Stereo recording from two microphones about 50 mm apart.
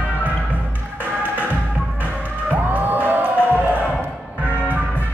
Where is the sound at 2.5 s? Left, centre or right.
Right.